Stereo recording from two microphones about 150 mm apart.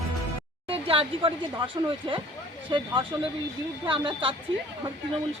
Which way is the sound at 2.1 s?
35° right (ahead or behind).